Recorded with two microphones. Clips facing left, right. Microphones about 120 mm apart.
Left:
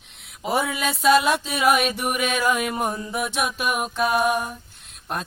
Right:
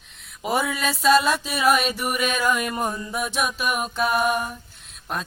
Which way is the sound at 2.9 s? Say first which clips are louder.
Left 1 dB; 20° left (ahead or behind).